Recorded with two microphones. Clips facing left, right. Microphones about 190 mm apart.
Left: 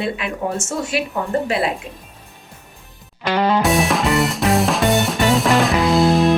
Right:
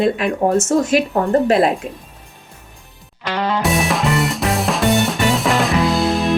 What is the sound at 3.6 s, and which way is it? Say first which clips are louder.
Music: left 1 dB; centre (ahead or behind).